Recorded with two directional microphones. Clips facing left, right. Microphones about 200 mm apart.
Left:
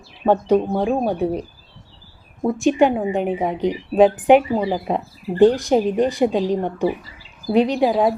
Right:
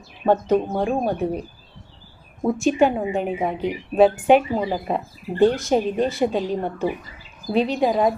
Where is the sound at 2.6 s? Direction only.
15° left (ahead or behind).